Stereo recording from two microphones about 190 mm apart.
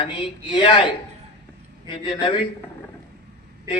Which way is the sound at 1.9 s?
25° left (ahead or behind).